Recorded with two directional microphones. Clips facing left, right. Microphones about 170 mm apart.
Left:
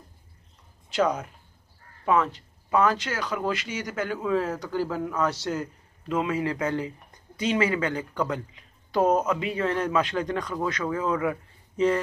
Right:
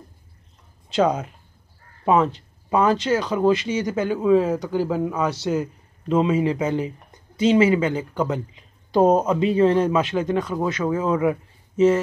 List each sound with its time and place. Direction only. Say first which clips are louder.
0.8 s speech: right 5 dB; 25° right (ahead or behind)